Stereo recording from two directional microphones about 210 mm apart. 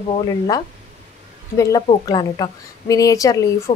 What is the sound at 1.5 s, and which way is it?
Speech, 15° left (ahead or behind).